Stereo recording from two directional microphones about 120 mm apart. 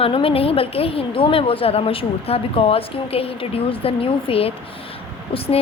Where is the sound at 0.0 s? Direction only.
50° left (ahead or behind).